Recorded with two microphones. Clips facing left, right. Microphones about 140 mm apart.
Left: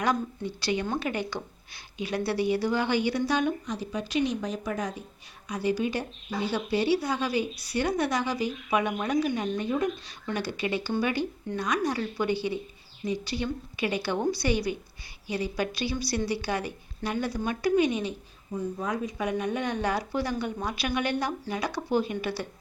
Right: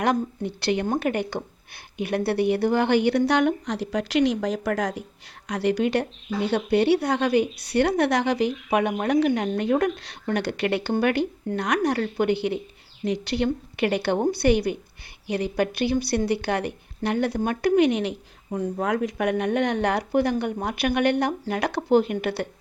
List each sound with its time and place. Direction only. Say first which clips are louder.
0.0 s speech: right 4 dB; 60° right (ahead or behind); by 5.0 s 90° right
5.5 s speech: right 5 dB; 70° right (ahead or behind)